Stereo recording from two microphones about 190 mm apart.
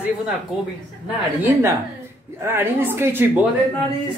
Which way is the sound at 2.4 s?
10° right (ahead or behind).